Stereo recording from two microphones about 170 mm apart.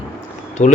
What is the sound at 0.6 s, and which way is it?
Speech, 50° left (ahead or behind).